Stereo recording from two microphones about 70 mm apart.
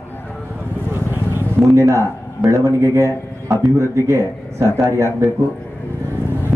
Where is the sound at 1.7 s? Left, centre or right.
Right.